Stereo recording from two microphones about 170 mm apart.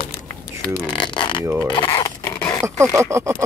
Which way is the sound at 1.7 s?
25° left (ahead or behind).